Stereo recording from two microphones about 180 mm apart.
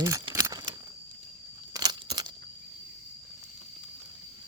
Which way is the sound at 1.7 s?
20° right (ahead or behind).